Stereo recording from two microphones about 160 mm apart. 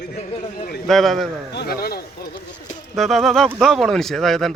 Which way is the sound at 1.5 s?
75° left (ahead or behind).